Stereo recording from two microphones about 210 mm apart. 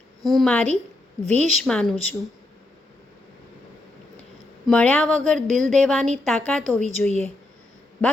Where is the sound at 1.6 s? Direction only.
5° left (ahead or behind).